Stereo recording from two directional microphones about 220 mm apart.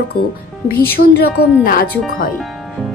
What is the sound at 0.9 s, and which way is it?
Speech, 45° left (ahead or behind).